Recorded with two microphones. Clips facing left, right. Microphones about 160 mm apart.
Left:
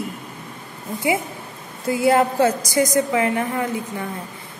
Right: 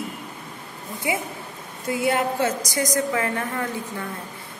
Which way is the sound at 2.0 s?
35° left (ahead or behind).